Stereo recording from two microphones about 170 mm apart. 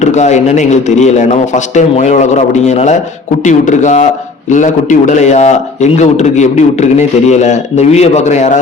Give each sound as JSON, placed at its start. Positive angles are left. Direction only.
{"t": 0.0, "sound": "a man's voice", "side_deg": 45}